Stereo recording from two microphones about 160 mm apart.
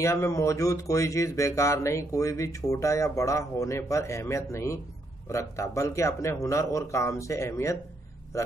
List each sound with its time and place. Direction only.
0.0 s a man's voice: 20° left (ahead or behind)